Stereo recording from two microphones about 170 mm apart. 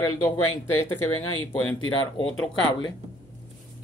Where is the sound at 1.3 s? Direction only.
30° left (ahead or behind).